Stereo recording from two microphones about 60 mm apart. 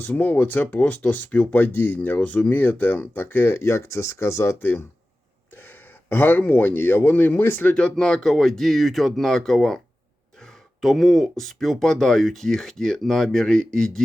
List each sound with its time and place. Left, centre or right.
0.0 s speech: left
5.5 s speech: left
7.7 s speech: centre